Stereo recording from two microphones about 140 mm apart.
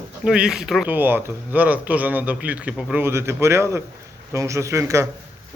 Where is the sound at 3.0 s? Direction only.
20° right (ahead or behind).